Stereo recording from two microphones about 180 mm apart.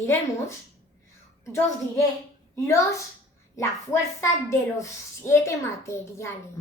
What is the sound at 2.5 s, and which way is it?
A woman's voice, 15° left (ahead or behind).